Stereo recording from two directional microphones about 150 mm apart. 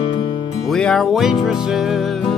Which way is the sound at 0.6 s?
5° left (ahead or behind).